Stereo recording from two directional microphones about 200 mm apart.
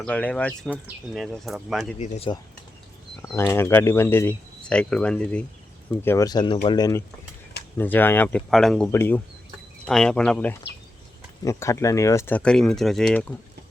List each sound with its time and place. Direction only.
0.0 s speech: 5° left (ahead or behind)
2.0 s speech: 30° left (ahead or behind)
3.3 s speech: 10° left (ahead or behind)